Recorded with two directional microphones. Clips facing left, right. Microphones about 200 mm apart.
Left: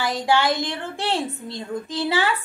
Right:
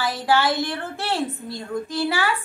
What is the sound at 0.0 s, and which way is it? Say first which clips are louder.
A woman's voice: even; 15° left (ahead or behind).